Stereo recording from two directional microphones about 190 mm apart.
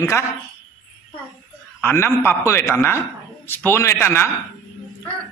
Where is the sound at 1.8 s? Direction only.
10° left (ahead or behind).